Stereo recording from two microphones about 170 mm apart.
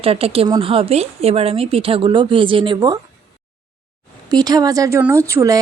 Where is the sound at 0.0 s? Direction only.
35° right (ahead or behind).